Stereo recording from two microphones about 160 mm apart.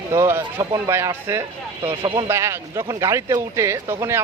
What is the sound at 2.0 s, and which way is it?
Speech, 35° right (ahead or behind).